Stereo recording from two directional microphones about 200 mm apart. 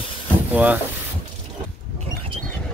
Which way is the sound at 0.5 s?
10° right (ahead or behind).